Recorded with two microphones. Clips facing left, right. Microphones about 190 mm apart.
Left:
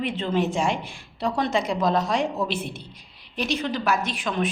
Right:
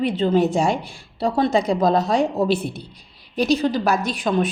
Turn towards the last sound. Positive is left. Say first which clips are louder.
# right 6 dB
turn(degrees=-35)  # may be behind; listen again after turning